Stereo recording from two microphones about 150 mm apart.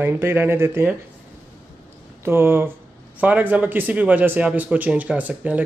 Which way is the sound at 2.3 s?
15° right (ahead or behind).